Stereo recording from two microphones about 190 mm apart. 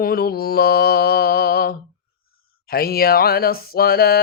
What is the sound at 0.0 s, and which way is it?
Mantra, 50° left (ahead or behind).